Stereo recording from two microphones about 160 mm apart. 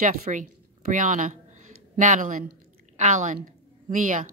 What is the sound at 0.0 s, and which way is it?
A woman's voice, 55° right (ahead or behind).